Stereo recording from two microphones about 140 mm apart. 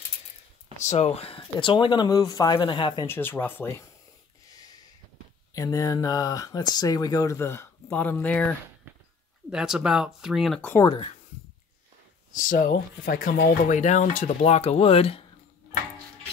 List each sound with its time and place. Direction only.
0.8 s speech: 50° left (ahead or behind); by 3.1 s 35° left (ahead or behind)
3.1 s speech: 15° left (ahead or behind)
4.5 s a sound: 25° left (ahead or behind)
5.5 s speech: 25° left (ahead or behind); by 8.5 s 10° left (ahead or behind)
9.5 s speech: 5° right (ahead or behind)
12.3 s speech: 70° left (ahead or behind); by 15.2 s 45° left (ahead or behind)